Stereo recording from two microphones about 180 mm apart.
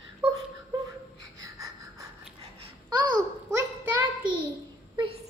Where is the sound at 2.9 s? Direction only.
25° right (ahead or behind).